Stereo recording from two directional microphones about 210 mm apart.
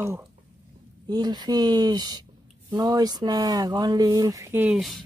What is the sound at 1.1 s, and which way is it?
Speech, 20° right (ahead or behind).